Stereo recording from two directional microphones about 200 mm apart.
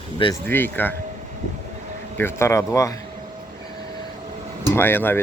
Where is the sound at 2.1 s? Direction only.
10° left (ahead or behind).